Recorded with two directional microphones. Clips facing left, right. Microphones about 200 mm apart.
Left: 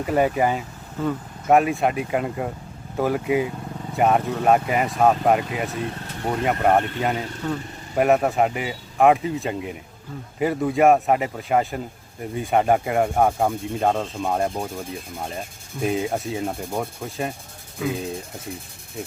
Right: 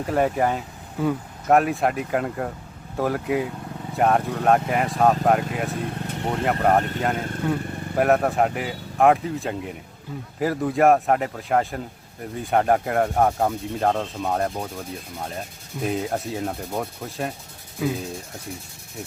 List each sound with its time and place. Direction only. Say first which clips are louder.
0.0 s speech: left 1 dB; centre (ahead or behind)
1.0 s speech: right 1 dB; 10° right (ahead or behind)
1.5 s speech: left 1 dB; centre (ahead or behind)
7.2 s speech: right 2 dB; 50° right (ahead or behind)
7.9 s speech: left 1 dB; centre (ahead or behind)